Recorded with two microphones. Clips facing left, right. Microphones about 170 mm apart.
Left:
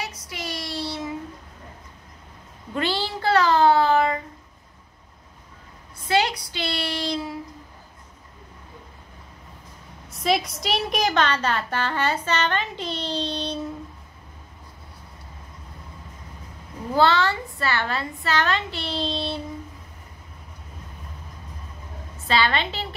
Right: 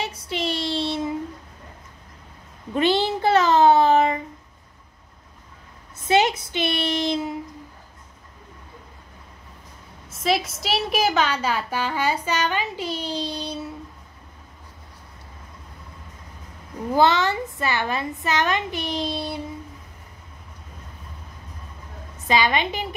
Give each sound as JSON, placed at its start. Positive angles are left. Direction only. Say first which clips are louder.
{"t": 0.0, "sound": "child singing", "louder": "right 6 dB", "side_deg": -25}
{"t": 2.7, "sound": "a sound", "louder": "right 6 dB", "side_deg": -20}
{"t": 6.0, "sound": "a sound", "louder": "right 3 dB", "side_deg": -20}
{"t": 10.0, "sound": "a woman's voice", "louder": "even", "side_deg": 0}
{"t": 16.9, "sound": "a woman's voice", "louder": "right 1 dB", "side_deg": -20}
{"t": 22.3, "sound": "a woman's voice", "louder": "right 2 dB", "side_deg": -15}